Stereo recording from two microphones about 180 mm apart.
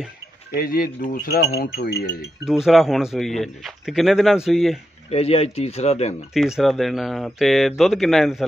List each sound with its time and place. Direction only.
0.6 s speech: 55° left (ahead or behind)
2.4 s speech: centre (ahead or behind)
5.1 s speech: 35° left (ahead or behind)
6.3 s speech: 5° right (ahead or behind)